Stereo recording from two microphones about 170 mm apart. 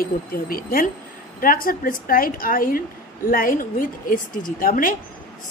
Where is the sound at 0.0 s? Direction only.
60° left (ahead or behind).